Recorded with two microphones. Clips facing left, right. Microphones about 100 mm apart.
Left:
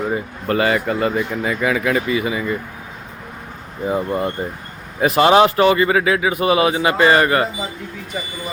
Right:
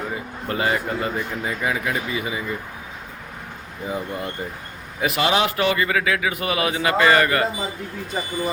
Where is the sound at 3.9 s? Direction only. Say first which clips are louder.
Left 8 dB; 45° left (ahead or behind); by 7.5 s 30° left (ahead or behind).